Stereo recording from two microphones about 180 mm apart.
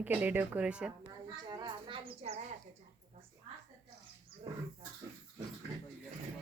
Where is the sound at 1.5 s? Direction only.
25° right (ahead or behind).